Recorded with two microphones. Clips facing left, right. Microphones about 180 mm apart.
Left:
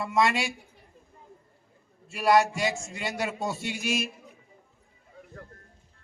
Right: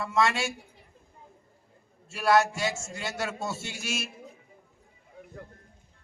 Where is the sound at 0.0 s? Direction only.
15° left (ahead or behind).